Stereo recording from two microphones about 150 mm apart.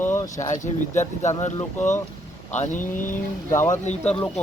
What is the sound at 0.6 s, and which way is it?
Speech, 55° left (ahead or behind).